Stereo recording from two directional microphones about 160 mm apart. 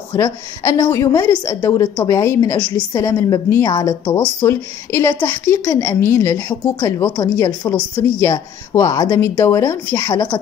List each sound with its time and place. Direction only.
0.1 s a woman's voice: 15° left (ahead or behind)